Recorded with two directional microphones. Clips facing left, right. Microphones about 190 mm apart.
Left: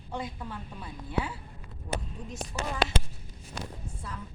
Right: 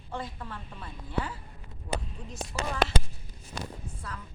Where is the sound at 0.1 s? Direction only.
10° left (ahead or behind).